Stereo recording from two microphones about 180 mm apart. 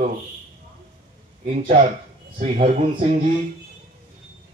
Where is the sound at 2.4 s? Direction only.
35° right (ahead or behind).